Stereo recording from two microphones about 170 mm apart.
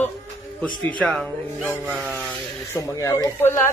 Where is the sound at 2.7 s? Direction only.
15° left (ahead or behind).